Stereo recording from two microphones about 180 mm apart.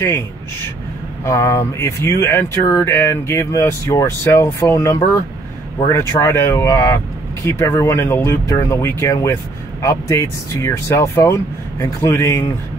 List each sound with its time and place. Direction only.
1.2 s speech: 15° left (ahead or behind)